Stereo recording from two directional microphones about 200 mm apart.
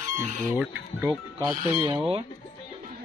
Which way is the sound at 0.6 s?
15° right (ahead or behind).